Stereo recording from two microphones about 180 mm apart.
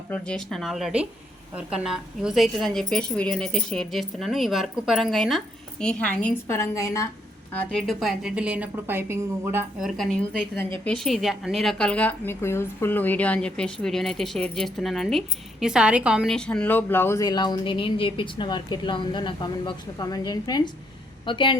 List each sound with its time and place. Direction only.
0.1 s a woman's voice: 5° left (ahead or behind)
7.5 s a woman's voice: 5° left (ahead or behind); by 9.8 s 15° right (ahead or behind)
9.8 s a woman's voice: 5° left (ahead or behind); by 21.6 s 25° left (ahead or behind)